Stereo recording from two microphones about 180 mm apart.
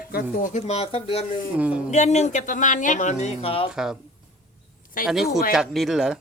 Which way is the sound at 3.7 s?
5° right (ahead or behind).